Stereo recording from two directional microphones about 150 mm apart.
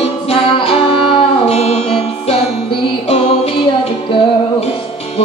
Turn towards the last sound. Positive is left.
turn(degrees=45)  # may be behind; listen again after turning